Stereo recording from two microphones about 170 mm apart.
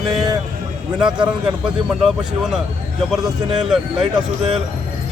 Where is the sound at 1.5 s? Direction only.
5° right (ahead or behind).